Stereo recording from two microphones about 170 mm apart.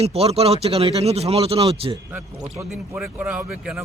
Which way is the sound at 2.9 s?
10° right (ahead or behind).